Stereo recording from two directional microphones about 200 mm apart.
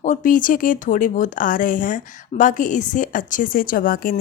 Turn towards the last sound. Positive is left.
turn(degrees=45)  # may be behind; listen again after turning